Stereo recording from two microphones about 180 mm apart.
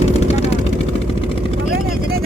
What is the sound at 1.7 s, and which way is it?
Vehicle, 60° right (ahead or behind).